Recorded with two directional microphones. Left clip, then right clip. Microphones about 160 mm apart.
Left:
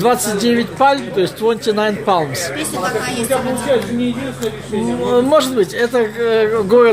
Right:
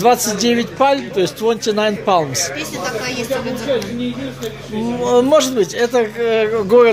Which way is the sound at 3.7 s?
25° left (ahead or behind).